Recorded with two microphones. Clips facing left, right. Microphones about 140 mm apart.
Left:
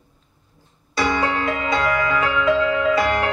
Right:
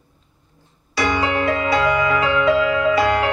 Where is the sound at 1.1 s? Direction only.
20° right (ahead or behind).